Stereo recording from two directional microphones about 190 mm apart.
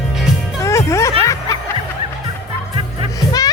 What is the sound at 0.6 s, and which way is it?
Music, 15° left (ahead or behind).